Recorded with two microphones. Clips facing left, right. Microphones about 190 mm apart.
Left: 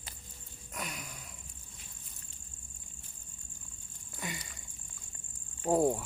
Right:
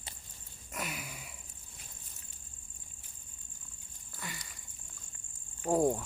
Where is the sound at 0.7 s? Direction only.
5° right (ahead or behind).